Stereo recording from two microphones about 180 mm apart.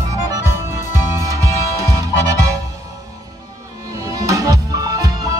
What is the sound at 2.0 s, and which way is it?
Music, 20° right (ahead or behind).